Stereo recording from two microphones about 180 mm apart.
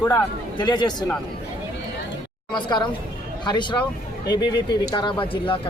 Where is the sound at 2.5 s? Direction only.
25° left (ahead or behind).